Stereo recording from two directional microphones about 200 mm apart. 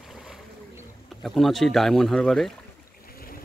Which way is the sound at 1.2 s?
Centre (ahead or behind).